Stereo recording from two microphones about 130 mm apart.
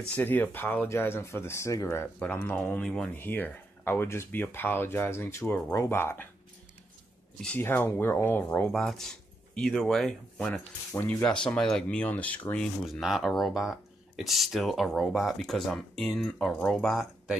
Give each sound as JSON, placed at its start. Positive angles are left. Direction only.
{"t": 0.0, "sound": "speech", "side_deg": 15}
{"t": 2.1, "sound": "speech", "side_deg": 10}
{"t": 7.4, "sound": "speech", "side_deg": 15}
{"t": 8.7, "sound": "speech", "side_deg": 5}
{"t": 12.8, "sound": "speech", "side_deg": 0}